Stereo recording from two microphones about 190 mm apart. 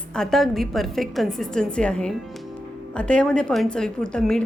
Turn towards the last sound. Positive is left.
turn(degrees=5)  # may be behind; listen again after turning